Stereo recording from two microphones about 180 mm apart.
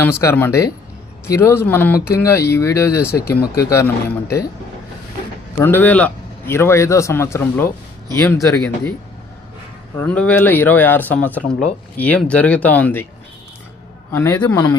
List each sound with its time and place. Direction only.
0.0 s speech: 15° left (ahead or behind)
5.5 s speech: 10° left (ahead or behind)
10.0 s speech: 5° left (ahead or behind)
14.1 s speech: 15° left (ahead or behind)